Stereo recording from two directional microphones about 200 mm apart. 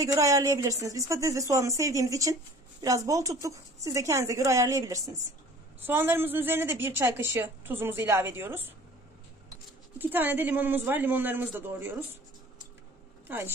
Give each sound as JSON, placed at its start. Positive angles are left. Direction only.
{"t": 0.0, "sound": "a woman's voice", "side_deg": -15}
{"t": 9.9, "sound": "a woman's voice", "side_deg": -10}
{"t": 13.3, "sound": "a woman's voice", "side_deg": -10}